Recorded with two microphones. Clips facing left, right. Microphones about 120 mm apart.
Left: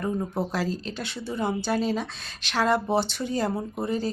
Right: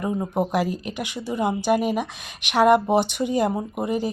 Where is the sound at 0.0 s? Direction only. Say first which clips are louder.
Right 4 dB; 15° right (ahead or behind).